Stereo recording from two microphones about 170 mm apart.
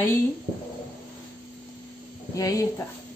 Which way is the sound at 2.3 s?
20° left (ahead or behind).